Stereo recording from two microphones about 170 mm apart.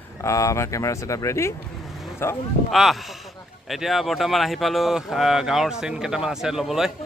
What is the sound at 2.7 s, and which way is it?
Speech, centre (ahead or behind).